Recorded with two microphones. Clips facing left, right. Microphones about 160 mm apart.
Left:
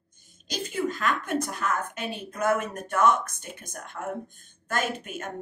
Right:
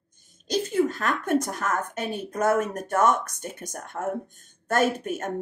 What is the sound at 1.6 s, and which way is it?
A woman's voice, 40° right (ahead or behind).